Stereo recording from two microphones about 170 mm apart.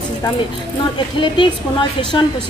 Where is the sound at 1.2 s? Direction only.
30° left (ahead or behind).